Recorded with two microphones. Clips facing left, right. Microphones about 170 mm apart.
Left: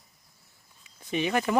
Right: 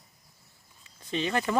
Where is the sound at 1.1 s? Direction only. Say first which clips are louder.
Left 2 dB; 15° left (ahead or behind).